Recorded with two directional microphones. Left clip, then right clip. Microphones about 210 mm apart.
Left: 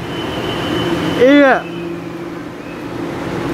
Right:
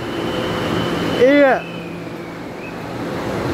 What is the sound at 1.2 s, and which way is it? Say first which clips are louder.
Speech: left 3 dB; 5° left (ahead or behind).